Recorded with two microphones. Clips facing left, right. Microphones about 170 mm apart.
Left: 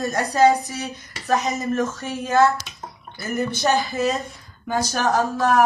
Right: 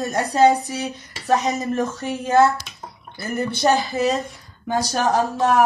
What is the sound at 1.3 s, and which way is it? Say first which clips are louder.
A woman's voice: right 2 dB; 30° right (ahead or behind).